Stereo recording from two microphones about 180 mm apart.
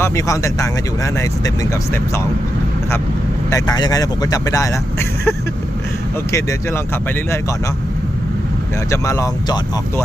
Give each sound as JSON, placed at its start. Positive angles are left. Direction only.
{"t": 0.0, "sound": "speech", "side_deg": 15}
{"t": 3.5, "sound": "speech", "side_deg": 20}
{"t": 6.3, "sound": "speech", "side_deg": 15}
{"t": 8.9, "sound": "speech", "side_deg": 15}